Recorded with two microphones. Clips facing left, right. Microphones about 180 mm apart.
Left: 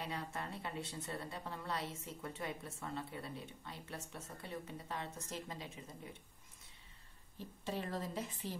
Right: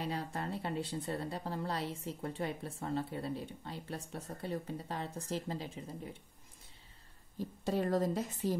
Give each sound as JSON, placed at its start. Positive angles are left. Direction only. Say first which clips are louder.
{"t": 0.0, "sound": "speech", "louder": "right 5 dB", "side_deg": -35}
{"t": 7.3, "sound": "a woman's voice", "louder": "right 8 dB", "side_deg": -40}